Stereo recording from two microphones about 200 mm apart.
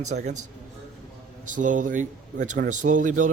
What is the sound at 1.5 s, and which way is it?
Speech, 40° right (ahead or behind).